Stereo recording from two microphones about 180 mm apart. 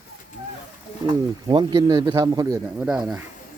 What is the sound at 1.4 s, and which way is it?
Speech, 25° right (ahead or behind).